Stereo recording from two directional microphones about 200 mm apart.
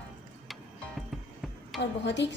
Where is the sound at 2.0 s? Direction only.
60° left (ahead or behind).